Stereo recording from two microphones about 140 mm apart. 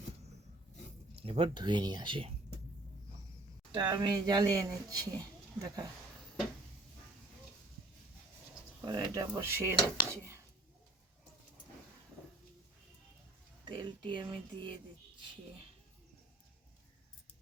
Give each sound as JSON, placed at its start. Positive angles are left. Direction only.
{"t": 1.1, "sound": "speech", "side_deg": -40}
{"t": 3.7, "sound": "speech", "side_deg": -30}
{"t": 8.8, "sound": "speech", "side_deg": -30}
{"t": 13.7, "sound": "speech", "side_deg": -35}